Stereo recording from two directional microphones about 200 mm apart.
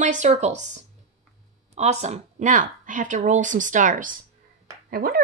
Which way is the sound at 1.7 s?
35° right (ahead or behind).